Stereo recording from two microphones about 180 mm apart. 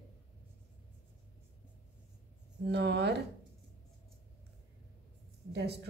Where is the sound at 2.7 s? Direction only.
70° right (ahead or behind).